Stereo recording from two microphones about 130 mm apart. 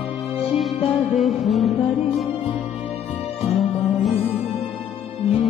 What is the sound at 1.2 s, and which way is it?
Music, centre (ahead or behind).